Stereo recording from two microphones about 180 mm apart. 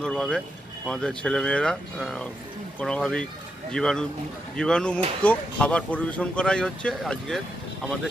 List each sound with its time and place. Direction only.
0.0 s speech: 5° left (ahead or behind)